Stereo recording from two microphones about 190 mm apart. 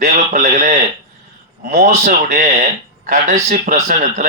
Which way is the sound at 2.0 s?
45° right (ahead or behind).